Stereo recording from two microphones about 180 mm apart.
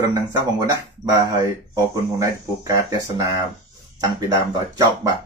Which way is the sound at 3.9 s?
20° right (ahead or behind).